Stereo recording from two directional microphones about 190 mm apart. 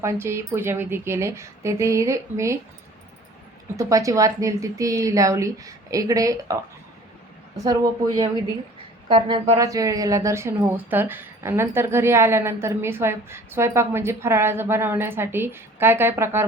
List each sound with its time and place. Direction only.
0.0 s speech: 15° right (ahead or behind)
3.8 s a woman's voice: 15° right (ahead or behind)